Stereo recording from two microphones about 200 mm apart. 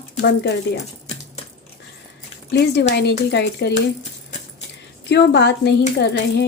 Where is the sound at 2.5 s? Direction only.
55° left (ahead or behind).